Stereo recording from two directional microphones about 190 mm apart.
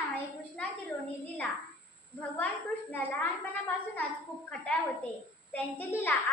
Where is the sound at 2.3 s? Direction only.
10° left (ahead or behind).